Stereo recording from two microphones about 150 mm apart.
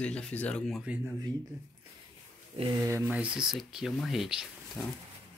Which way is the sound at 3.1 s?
10° right (ahead or behind).